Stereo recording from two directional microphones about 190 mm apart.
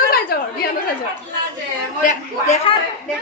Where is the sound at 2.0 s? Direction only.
40° left (ahead or behind).